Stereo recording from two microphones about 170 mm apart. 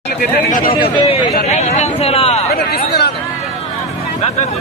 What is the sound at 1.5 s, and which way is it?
Speech, 40° left (ahead or behind).